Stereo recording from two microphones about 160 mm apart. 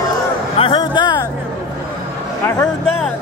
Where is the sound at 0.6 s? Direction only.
30° left (ahead or behind).